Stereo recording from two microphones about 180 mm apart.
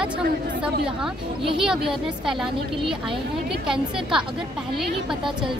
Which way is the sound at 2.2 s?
Centre (ahead or behind).